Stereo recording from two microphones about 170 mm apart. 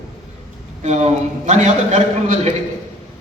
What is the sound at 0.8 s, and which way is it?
A man's voice, 45° right (ahead or behind).